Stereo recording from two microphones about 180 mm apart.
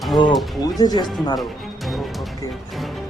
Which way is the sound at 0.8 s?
20° left (ahead or behind).